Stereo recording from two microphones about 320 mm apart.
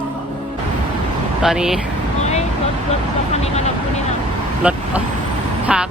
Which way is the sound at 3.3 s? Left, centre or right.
Centre.